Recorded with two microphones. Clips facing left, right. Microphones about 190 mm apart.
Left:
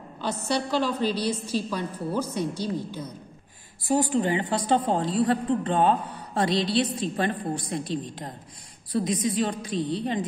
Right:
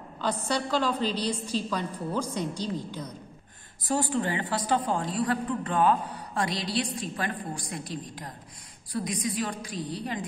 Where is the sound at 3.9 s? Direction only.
20° left (ahead or behind).